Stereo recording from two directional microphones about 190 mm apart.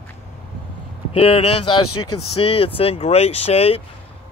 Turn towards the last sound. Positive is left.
turn(degrees=30)  # may be behind; listen again after turning